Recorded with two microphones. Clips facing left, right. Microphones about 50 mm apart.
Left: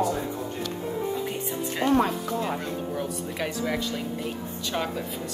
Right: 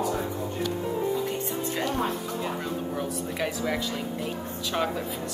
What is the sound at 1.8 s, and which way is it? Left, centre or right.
Speech, left.